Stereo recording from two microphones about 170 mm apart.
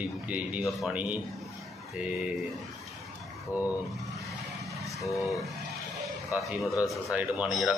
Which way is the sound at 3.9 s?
Centre (ahead or behind).